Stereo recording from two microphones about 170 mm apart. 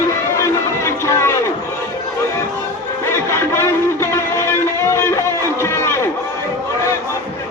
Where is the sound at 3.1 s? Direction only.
15° left (ahead or behind).